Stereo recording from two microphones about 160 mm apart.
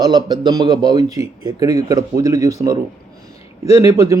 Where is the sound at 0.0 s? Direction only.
25° right (ahead or behind).